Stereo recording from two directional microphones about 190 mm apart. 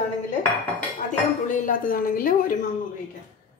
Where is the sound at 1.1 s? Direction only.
40° left (ahead or behind).